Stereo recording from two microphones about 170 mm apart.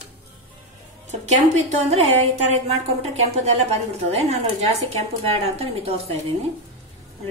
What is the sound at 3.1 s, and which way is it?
A woman's voice, 40° right (ahead or behind).